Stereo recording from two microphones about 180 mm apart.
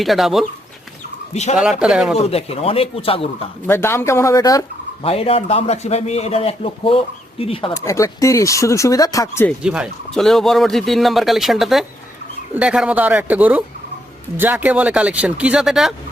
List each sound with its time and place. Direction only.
0.0 s speech: centre (ahead or behind)
1.3 s a man's voice: 40° left (ahead or behind)
1.8 s speech: 5° right (ahead or behind)
2.1 s a man's voice: 35° left (ahead or behind)
3.7 s speech: 15° left (ahead or behind)
5.0 s a man's voice: 30° left (ahead or behind)
7.8 s speech: 20° left (ahead or behind)
9.6 s speech: 5° right (ahead or behind)